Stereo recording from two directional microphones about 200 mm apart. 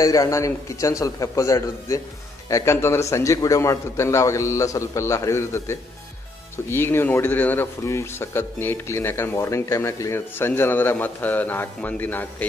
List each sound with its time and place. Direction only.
0.0 s speech: 15° left (ahead or behind)